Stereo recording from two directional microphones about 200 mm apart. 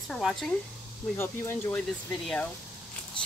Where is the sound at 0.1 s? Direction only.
Centre (ahead or behind).